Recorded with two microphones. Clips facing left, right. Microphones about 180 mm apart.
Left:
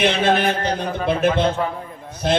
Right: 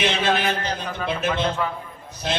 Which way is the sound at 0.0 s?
55° left (ahead or behind).